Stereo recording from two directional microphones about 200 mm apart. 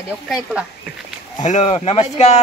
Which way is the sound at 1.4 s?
35° left (ahead or behind).